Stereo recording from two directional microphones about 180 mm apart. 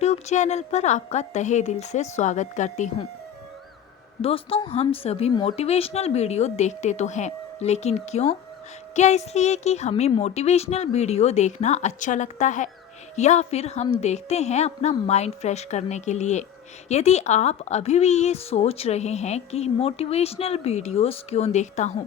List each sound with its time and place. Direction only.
0.0 s speech: 40° left (ahead or behind)
4.2 s speech: 30° left (ahead or behind)